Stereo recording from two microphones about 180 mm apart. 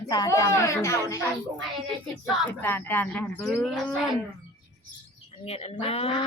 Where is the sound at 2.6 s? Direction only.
10° left (ahead or behind).